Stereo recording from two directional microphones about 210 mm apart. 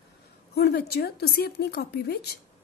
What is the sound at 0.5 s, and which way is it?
A woman's voice, 50° left (ahead or behind).